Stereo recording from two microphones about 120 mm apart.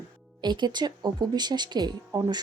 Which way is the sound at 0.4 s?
40° right (ahead or behind).